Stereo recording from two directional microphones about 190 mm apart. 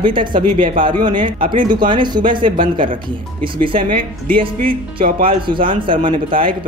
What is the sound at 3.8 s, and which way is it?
Speech, 45° right (ahead or behind).